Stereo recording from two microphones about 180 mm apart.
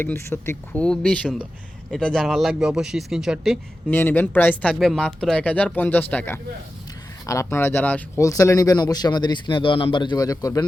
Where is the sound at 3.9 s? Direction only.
10° left (ahead or behind).